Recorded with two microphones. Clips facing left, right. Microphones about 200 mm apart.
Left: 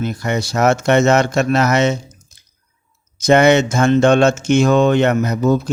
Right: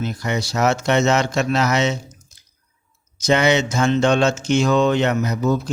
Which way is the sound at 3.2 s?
55° left (ahead or behind).